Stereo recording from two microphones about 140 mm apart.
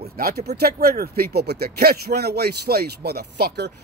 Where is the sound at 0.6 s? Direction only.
90° right.